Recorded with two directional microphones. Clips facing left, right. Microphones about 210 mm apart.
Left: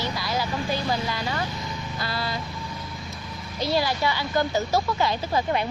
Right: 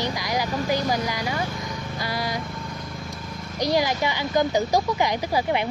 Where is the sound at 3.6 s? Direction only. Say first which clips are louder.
Right 2 dB; 15° right (ahead or behind).